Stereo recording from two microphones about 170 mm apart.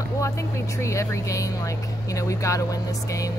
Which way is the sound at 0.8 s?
15° left (ahead or behind).